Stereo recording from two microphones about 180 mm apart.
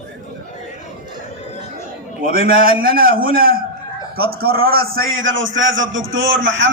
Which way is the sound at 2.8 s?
55° right (ahead or behind).